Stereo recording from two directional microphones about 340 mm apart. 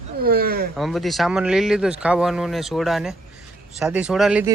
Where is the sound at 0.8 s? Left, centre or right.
Centre.